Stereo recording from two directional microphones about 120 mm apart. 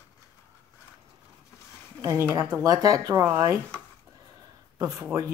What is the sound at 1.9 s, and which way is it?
A woman's voice, 25° right (ahead or behind).